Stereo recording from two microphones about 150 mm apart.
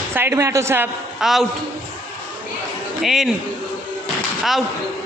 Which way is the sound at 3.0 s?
Centre (ahead or behind).